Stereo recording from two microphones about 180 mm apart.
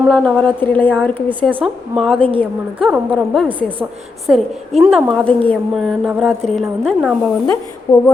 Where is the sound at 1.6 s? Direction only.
Centre (ahead or behind).